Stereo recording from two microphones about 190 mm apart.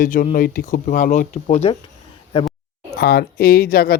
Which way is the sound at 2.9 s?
55° left (ahead or behind).